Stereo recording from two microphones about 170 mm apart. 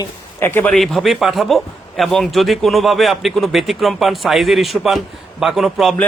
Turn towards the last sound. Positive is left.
turn(degrees=0)  # may be behind; listen again after turning